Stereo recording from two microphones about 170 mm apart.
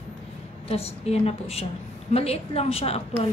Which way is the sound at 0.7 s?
35° left (ahead or behind).